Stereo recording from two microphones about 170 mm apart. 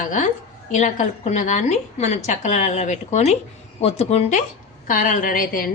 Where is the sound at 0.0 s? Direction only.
45° left (ahead or behind).